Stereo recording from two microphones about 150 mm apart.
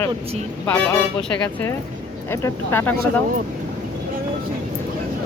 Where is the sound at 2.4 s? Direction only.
15° left (ahead or behind).